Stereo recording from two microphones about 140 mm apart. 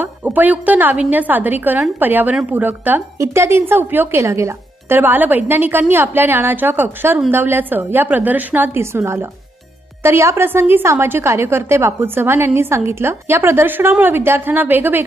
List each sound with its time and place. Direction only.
0.0 s speech: 10° right (ahead or behind)